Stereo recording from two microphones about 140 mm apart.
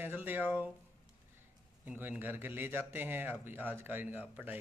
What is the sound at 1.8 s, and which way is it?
A man's voice, 10° right (ahead or behind).